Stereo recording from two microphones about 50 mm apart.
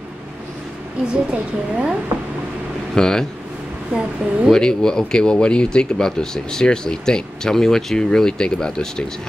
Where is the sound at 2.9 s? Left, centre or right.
Centre.